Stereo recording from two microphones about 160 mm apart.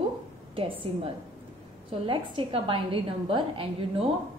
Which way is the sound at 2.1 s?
35° right (ahead or behind).